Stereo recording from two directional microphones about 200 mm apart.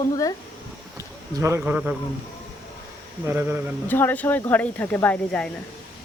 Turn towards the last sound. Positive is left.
turn(degrees=5)  # may be behind; listen again after turning